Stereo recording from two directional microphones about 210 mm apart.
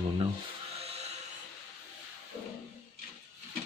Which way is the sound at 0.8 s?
30° right (ahead or behind).